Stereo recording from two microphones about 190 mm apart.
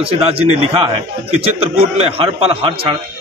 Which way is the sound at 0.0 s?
30° right (ahead or behind).